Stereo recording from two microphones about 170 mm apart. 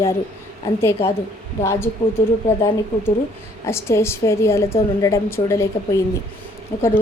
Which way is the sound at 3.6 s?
15° left (ahead or behind).